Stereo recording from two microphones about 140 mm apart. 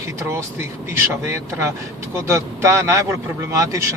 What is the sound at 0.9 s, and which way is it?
A man's voice, 20° right (ahead or behind).